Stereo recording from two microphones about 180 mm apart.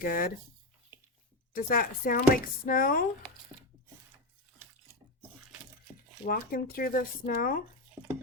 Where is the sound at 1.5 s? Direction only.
50° left (ahead or behind).